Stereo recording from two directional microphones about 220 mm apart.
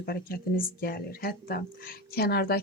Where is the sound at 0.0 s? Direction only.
40° left (ahead or behind).